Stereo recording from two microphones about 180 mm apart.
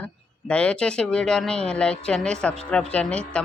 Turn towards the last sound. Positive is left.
turn(degrees=5)  # may be behind; listen again after turning